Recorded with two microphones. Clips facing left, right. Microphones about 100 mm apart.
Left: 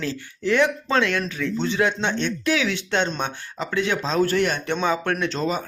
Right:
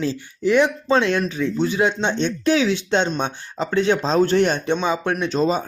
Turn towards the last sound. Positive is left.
turn(degrees=-15)  # may be behind; listen again after turning